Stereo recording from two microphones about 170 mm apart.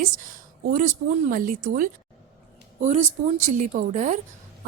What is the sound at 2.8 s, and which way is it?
A woman's voice, 40° right (ahead or behind).